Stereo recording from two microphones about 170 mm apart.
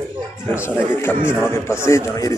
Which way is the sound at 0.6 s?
15° left (ahead or behind).